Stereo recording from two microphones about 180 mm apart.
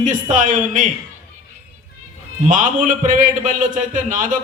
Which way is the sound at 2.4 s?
45° right (ahead or behind).